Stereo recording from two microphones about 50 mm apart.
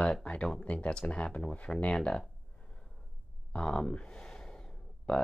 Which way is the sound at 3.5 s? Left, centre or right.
Centre.